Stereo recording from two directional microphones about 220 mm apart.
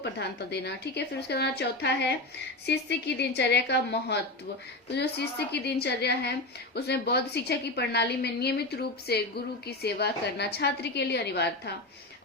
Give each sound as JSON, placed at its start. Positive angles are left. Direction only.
{"t": 0.0, "sound": "a woman's voice", "side_deg": 50}